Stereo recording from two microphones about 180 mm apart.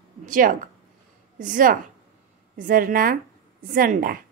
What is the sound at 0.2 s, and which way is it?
A woman's voice, 45° right (ahead or behind).